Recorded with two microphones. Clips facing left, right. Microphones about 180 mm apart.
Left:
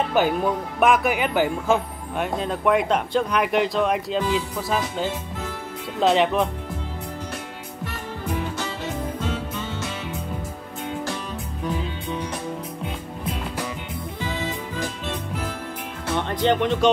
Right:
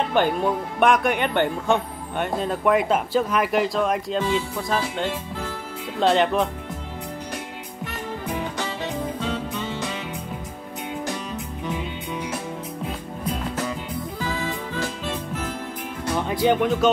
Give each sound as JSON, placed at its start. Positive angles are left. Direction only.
{"t": 0.1, "sound": "speech", "side_deg": 5}
{"t": 9.2, "sound": "music", "side_deg": 5}
{"t": 14.2, "sound": "music", "side_deg": 20}
{"t": 16.1, "sound": "speech", "side_deg": -5}